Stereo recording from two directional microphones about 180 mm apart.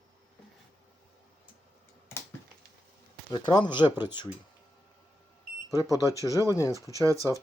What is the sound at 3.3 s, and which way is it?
Speech, 25° left (ahead or behind).